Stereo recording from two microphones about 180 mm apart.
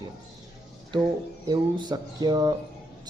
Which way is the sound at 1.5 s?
25° right (ahead or behind).